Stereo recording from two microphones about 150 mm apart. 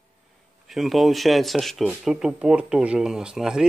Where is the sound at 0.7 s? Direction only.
Centre (ahead or behind).